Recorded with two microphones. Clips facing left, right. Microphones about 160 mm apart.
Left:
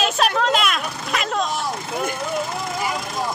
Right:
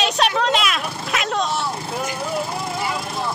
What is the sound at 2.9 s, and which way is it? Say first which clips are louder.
Vehicle: even; centre (ahead or behind).